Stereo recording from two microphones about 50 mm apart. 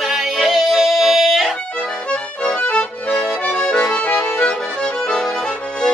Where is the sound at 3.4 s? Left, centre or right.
Centre.